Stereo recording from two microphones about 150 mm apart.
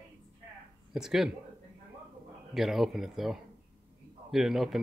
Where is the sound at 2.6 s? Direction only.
Centre (ahead or behind).